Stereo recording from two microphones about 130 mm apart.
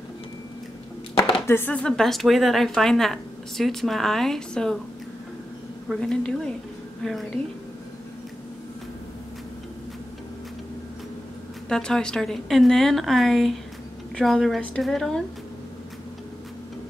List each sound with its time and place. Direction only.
1.5 s a woman's voice: 15° left (ahead or behind)
5.9 s a woman's voice: 5° left (ahead or behind)
11.7 s a woman's voice: 5° left (ahead or behind)